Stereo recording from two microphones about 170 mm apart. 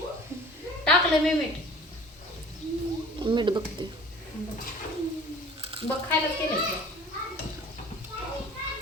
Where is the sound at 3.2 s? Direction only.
25° right (ahead or behind).